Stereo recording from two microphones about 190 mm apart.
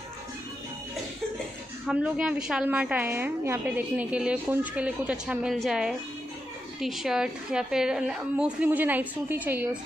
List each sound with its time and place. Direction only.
1.9 s a woman's voice: 5° right (ahead or behind)